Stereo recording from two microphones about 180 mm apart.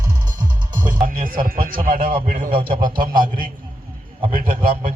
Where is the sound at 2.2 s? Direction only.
50° right (ahead or behind).